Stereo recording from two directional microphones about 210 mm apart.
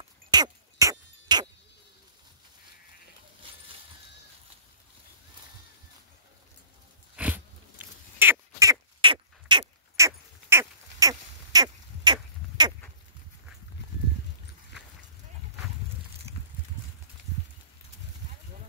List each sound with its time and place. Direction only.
0.3 s a sound: 15° right (ahead or behind)
7.2 s biting: 5° right (ahead or behind)
8.2 s duck: 15° right (ahead or behind)